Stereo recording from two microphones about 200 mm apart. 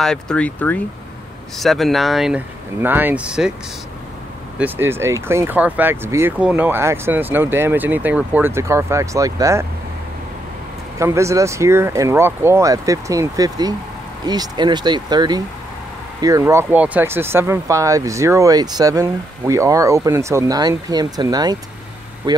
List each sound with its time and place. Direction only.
0.0 s speech: 5° left (ahead or behind)
4.6 s speech: 10° right (ahead or behind)
11.0 s speech: 15° right (ahead or behind)